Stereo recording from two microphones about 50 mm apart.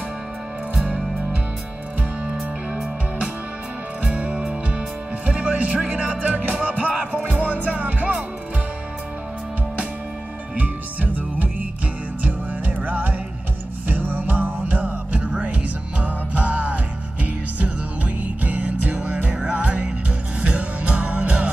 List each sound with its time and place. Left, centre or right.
4.1 s music: right
10.5 s music: right